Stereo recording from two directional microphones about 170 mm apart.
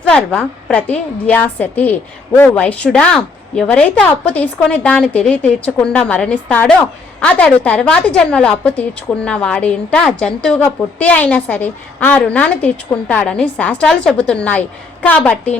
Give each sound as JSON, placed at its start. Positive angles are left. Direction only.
{"t": 0.1, "sound": "a woman's voice", "side_deg": 5}